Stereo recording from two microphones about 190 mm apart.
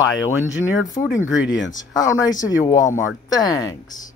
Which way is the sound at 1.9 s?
20° left (ahead or behind).